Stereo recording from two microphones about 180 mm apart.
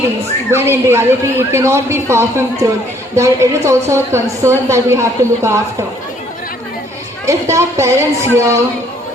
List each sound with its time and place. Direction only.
0.5 s a woman's voice: 15° right (ahead or behind)
7.3 s a woman's voice: 15° right (ahead or behind)